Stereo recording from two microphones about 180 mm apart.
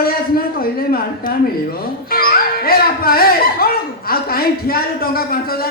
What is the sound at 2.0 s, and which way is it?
Speech, 55° left (ahead or behind).